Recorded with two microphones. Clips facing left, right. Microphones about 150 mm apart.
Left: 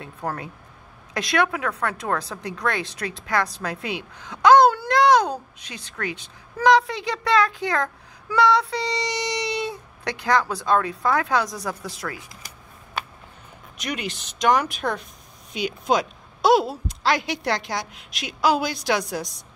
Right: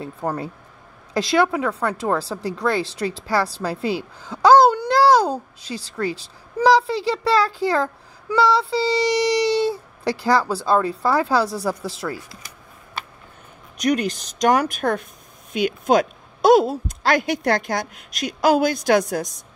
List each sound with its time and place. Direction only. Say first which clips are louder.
0.2 s a woman's voice: right 3 dB; 20° right (ahead or behind)
13.7 s a woman's voice: right 10 dB; 45° right (ahead or behind)